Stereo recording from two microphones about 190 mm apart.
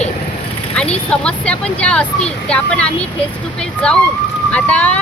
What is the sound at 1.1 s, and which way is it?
Speech, 5° left (ahead or behind).